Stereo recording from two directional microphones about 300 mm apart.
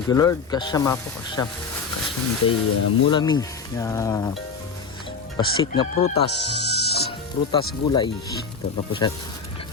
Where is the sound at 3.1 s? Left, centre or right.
Centre.